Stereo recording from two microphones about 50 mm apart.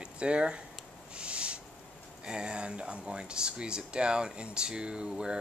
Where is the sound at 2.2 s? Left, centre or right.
Centre.